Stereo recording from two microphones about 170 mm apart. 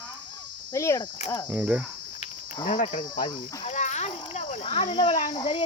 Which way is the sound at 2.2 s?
30° left (ahead or behind).